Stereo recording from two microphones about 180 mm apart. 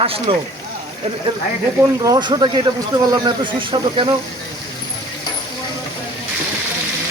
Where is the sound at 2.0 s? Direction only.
20° right (ahead or behind).